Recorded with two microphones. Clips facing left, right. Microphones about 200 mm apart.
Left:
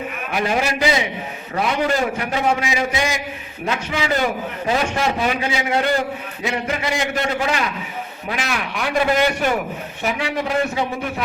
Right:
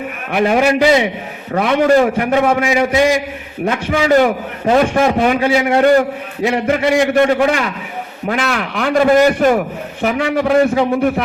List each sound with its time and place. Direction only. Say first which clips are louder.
0.3 s a man's voice: right 8 dB; 55° right (ahead or behind)
10.0 s a man's voice: right 7 dB; 55° right (ahead or behind)